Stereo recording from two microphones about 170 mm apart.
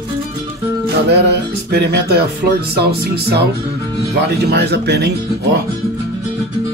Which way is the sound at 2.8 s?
70° right (ahead or behind).